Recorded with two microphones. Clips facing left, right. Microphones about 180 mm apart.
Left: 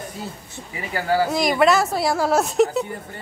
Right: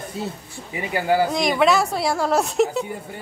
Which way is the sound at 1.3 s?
Centre (ahead or behind).